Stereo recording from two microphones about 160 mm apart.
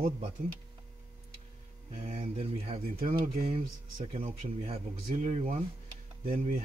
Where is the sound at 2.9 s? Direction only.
65° right (ahead or behind).